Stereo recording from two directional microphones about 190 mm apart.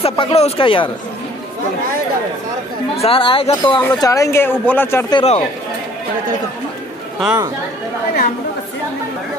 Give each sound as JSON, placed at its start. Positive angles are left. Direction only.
{"t": 0.0, "sound": "speech", "side_deg": 30}
{"t": 3.0, "sound": "speech", "side_deg": 30}
{"t": 5.1, "sound": "speech", "side_deg": 30}